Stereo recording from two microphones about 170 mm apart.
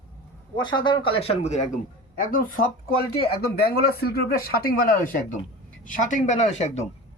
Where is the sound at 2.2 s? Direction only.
55° left (ahead or behind).